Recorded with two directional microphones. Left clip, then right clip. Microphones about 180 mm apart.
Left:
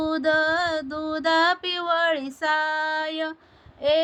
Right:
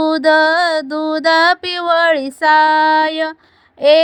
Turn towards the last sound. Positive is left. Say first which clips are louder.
# right 12 dB
turn(degrees=-45)  # may be behind; listen again after turning